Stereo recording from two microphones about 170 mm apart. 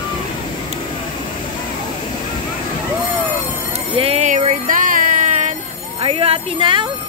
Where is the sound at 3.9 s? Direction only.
35° right (ahead or behind).